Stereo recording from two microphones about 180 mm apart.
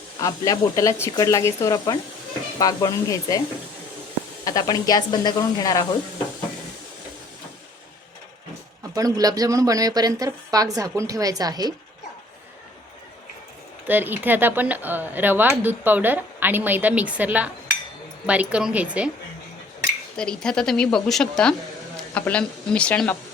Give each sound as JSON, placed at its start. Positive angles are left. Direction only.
{"t": 0.2, "sound": "speech", "side_deg": 20}
{"t": 4.4, "sound": "speech", "side_deg": 20}
{"t": 9.0, "sound": "a woman's voice", "side_deg": -20}
{"t": 13.8, "sound": "speech", "side_deg": -10}
{"t": 20.1, "sound": "speech", "side_deg": 5}